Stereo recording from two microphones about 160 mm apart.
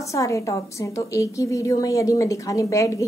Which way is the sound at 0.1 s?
20° left (ahead or behind).